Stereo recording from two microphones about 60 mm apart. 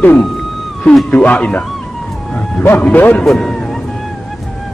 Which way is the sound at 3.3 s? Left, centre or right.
Centre.